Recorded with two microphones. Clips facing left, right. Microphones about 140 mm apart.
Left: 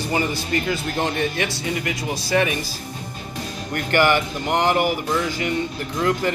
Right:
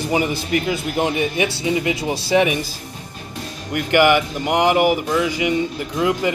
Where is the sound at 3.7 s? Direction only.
10° right (ahead or behind).